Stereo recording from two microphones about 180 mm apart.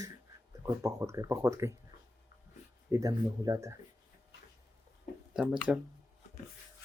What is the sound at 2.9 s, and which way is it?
Speech, 20° right (ahead or behind).